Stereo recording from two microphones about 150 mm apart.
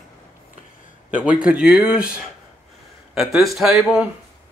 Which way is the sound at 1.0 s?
10° right (ahead or behind).